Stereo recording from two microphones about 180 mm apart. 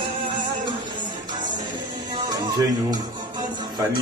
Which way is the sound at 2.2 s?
20° right (ahead or behind).